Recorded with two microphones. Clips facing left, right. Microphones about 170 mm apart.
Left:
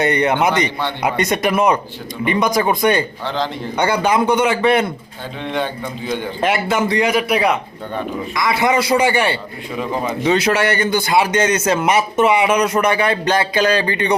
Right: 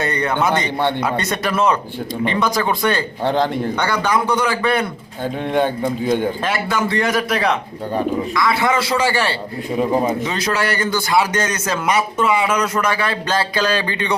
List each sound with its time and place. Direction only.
0.0 s a man's voice: 20° left (ahead or behind)
3.2 s a man's voice: 50° right (ahead or behind)
3.8 s a man's voice: 20° left (ahead or behind)
5.5 s a man's voice: 40° right (ahead or behind)
6.4 s a man's voice: 20° left (ahead or behind)